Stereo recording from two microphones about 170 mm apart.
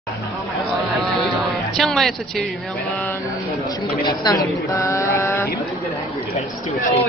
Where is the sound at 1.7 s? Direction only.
Centre (ahead or behind).